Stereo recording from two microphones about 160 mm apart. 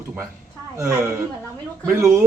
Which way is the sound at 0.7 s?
20° right (ahead or behind).